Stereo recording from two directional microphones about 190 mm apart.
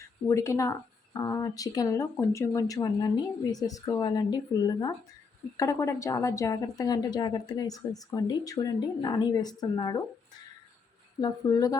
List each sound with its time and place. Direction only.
0.3 s a woman's voice: 15° left (ahead or behind)
11.2 s a woman's voice: 20° left (ahead or behind)